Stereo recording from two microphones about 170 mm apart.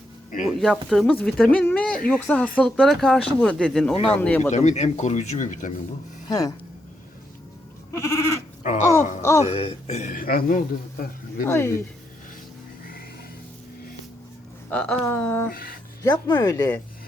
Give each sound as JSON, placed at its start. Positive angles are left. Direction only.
{"t": 0.4, "sound": "speech", "side_deg": 0}
{"t": 3.9, "sound": "speech", "side_deg": 35}
{"t": 4.2, "sound": "speech", "side_deg": 10}
{"t": 4.5, "sound": "speech", "side_deg": 45}
{"t": 6.2, "sound": "speech", "side_deg": 20}
{"t": 7.9, "sound": "speech", "side_deg": 15}
{"t": 9.4, "sound": "speech", "side_deg": 35}
{"t": 11.4, "sound": "speech", "side_deg": 15}
{"t": 14.7, "sound": "speech", "side_deg": 5}
{"t": 15.4, "sound": "speech", "side_deg": 60}
{"t": 16.0, "sound": "speech", "side_deg": 25}